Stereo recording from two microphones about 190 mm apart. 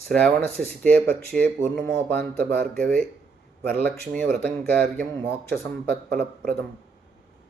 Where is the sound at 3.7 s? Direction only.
5° left (ahead or behind).